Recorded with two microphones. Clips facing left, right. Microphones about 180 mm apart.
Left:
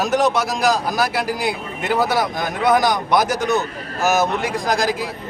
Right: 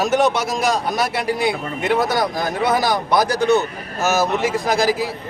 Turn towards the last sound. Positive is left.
turn(degrees=0)  # may be behind; listen again after turning